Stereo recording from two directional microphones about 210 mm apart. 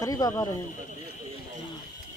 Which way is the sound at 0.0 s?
15° left (ahead or behind).